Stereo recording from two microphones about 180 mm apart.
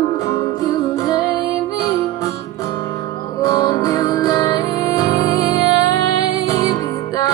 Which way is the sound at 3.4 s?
20° left (ahead or behind).